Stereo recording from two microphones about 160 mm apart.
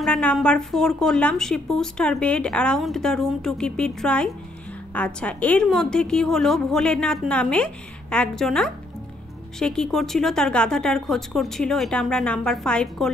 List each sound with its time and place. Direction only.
0.0 s speech: 5° left (ahead or behind)